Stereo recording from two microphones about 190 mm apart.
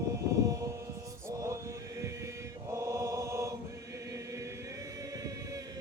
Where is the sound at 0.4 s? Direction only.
15° right (ahead or behind).